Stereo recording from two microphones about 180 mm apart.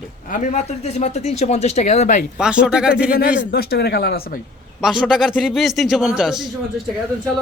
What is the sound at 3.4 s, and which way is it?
Speech, 65° left (ahead or behind).